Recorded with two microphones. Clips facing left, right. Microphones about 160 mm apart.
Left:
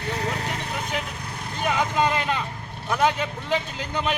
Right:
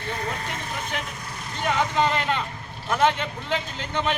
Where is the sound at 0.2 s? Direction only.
75° left (ahead or behind).